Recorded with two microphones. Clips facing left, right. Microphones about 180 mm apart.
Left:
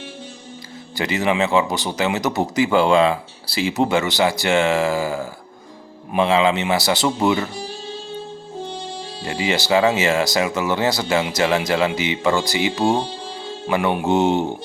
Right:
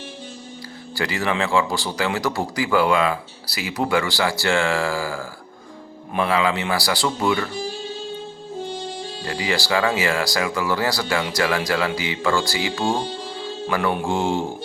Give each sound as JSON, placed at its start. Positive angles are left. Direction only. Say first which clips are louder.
{"t": 0.9, "sound": "speech", "louder": "left 3 dB", "side_deg": 20}
{"t": 9.2, "sound": "speech", "louder": "left 3 dB", "side_deg": 20}